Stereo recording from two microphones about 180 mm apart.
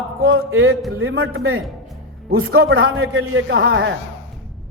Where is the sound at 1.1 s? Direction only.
90° right.